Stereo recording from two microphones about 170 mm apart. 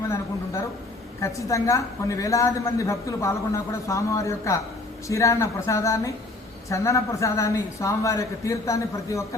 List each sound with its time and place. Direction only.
1.2 s a woman's voice: 20° left (ahead or behind)